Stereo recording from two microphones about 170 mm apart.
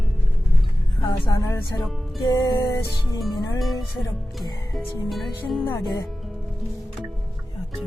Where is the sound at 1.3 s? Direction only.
15° left (ahead or behind).